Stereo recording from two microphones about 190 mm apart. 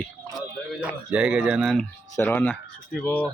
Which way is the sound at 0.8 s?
5° right (ahead or behind).